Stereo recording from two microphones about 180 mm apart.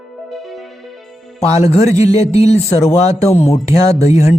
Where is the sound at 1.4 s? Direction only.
35° left (ahead or behind).